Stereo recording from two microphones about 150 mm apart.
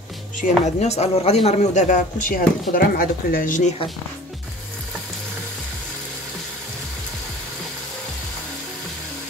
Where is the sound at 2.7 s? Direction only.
80° left; by 3.7 s 60° left (ahead or behind).